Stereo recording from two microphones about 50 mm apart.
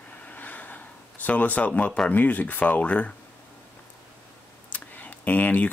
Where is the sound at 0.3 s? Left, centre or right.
Left.